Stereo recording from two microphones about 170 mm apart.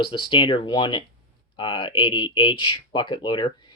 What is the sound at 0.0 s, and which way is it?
Speech, 25° left (ahead or behind).